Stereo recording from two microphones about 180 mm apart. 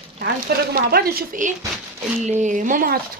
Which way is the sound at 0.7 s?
60° right (ahead or behind).